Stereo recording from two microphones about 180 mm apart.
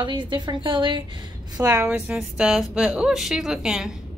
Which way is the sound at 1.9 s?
5° right (ahead or behind).